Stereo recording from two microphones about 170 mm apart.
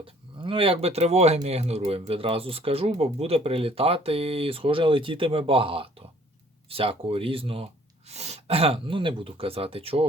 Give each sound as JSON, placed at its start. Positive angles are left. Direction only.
{"t": 0.0, "sound": "speech", "side_deg": -30}